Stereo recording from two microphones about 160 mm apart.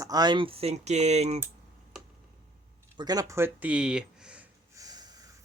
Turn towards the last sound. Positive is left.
turn(degrees=-25)  # may be behind; listen again after turning